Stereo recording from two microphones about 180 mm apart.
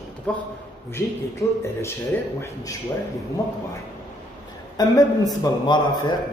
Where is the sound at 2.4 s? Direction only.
20° left (ahead or behind).